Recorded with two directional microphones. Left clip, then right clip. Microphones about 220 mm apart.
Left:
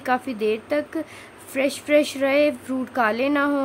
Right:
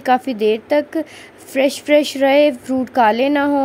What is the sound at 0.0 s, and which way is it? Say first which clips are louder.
Speech: right 7 dB; 20° right (ahead or behind).